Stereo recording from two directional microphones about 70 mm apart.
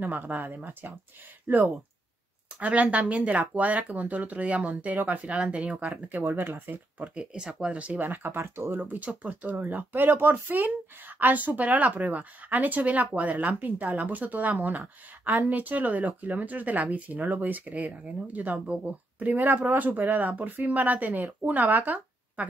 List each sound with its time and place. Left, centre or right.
0.0 s speech: right
6.0 s speech: right
7.2 s speech: centre
8.0 s speech: right